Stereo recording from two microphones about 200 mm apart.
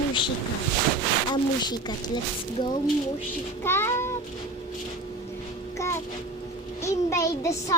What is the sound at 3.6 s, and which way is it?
Child singing, 10° left (ahead or behind).